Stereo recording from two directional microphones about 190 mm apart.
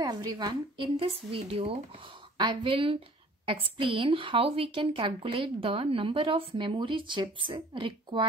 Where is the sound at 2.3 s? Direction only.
25° right (ahead or behind).